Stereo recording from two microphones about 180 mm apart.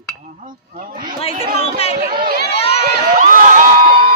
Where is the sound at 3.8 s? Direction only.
30° right (ahead or behind).